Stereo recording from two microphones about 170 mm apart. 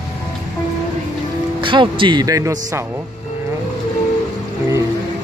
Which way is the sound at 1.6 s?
30° right (ahead or behind).